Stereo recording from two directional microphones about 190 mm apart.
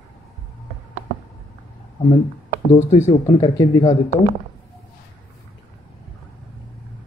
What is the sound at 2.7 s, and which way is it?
Speech, 35° left (ahead or behind).